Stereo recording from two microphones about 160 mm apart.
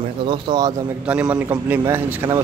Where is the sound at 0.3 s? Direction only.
25° right (ahead or behind).